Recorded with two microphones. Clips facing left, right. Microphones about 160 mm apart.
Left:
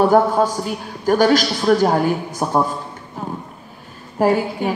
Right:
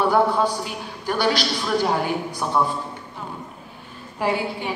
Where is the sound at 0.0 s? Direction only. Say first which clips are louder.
Left 5 dB; 45° left (ahead or behind).